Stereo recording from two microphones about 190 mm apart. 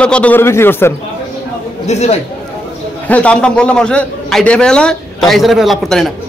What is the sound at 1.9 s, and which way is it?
Speech, 35° left (ahead or behind).